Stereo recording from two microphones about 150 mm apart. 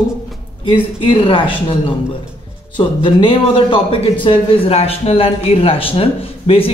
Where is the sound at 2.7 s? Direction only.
35° left (ahead or behind).